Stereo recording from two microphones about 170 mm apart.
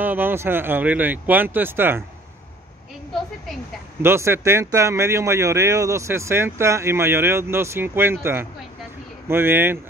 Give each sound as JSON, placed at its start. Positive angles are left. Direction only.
{"t": 0.0, "sound": "speech", "side_deg": -10}
{"t": 4.0, "sound": "speech", "side_deg": -15}